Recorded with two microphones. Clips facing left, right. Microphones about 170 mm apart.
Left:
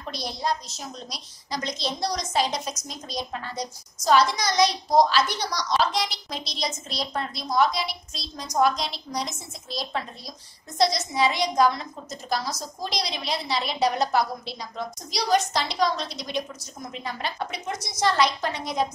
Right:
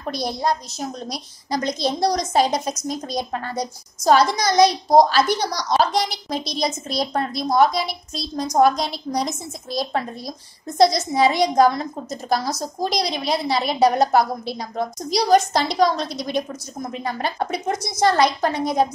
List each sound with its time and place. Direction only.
0.0 s a woman's voice: 50° right (ahead or behind)